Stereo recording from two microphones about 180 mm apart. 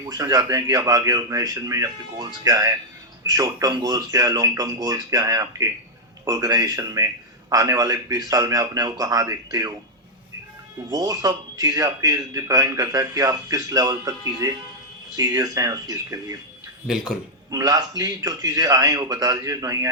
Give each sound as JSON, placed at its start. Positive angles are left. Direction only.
{"t": 0.1, "sound": "a man's voice", "side_deg": -20}
{"t": 10.9, "sound": "a man's voice", "side_deg": -20}
{"t": 16.8, "sound": "speech", "side_deg": -5}
{"t": 17.5, "sound": "a man's voice", "side_deg": -20}